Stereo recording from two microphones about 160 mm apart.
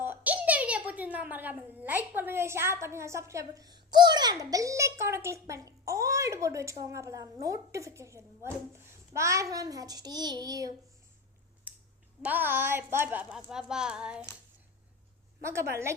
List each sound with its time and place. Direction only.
0.0 s a child's voice: 10° right (ahead or behind)
11.7 s a sound: 10° right (ahead or behind)
12.2 s speech: 10° right (ahead or behind)